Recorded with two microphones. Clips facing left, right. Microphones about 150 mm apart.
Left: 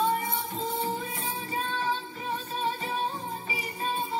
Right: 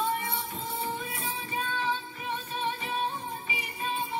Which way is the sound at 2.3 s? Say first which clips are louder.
Left 2 dB; 35° left (ahead or behind).